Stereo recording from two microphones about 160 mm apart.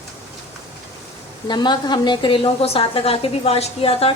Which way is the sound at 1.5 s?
25° left (ahead or behind).